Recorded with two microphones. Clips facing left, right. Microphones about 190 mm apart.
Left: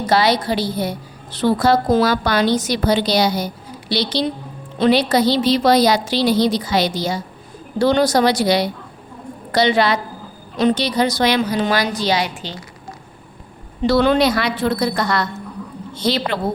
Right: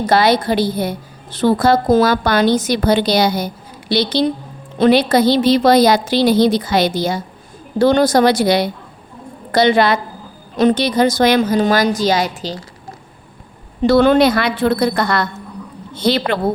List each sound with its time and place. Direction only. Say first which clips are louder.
0.0 s a woman's voice: right 3 dB; 50° right (ahead or behind)
13.8 s a woman's voice: right 4 dB; 50° right (ahead or behind)